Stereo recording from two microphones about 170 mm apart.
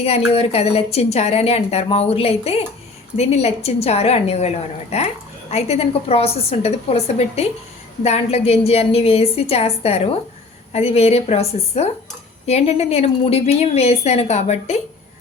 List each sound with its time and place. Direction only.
0.0 s a woman's voice: 35° left (ahead or behind)